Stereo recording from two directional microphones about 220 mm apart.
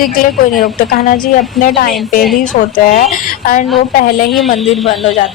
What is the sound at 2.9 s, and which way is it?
Speech, 35° left (ahead or behind).